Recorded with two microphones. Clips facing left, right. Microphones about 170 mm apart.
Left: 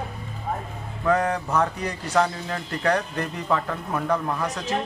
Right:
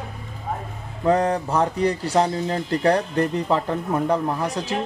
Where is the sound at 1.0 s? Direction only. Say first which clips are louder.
Right 3 dB; 30° right (ahead or behind).